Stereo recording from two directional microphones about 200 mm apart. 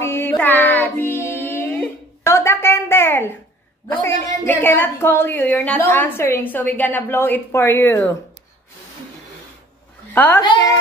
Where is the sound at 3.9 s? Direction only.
10° left (ahead or behind).